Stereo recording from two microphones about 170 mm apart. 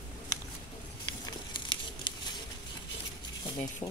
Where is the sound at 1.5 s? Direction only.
30° left (ahead or behind).